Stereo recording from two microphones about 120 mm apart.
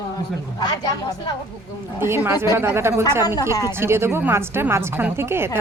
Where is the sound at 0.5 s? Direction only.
30° left (ahead or behind).